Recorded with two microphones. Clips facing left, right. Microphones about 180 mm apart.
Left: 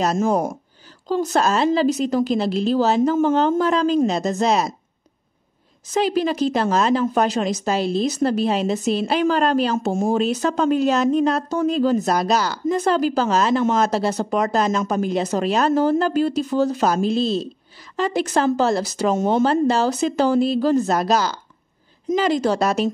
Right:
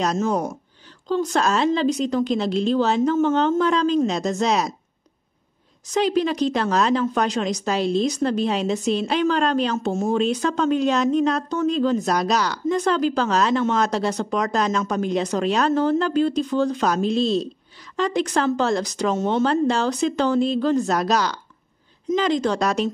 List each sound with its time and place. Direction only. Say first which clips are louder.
0.0 s speech: left 3 dB; 5° left (ahead or behind)
5.9 s speech: left 1 dB; 5° left (ahead or behind)